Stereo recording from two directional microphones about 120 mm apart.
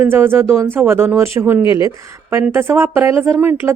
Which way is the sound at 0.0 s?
20° right (ahead or behind).